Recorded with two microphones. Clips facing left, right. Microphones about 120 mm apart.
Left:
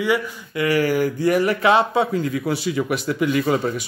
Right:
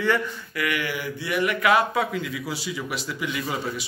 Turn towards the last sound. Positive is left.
turn(degrees=50)  # may be behind; listen again after turning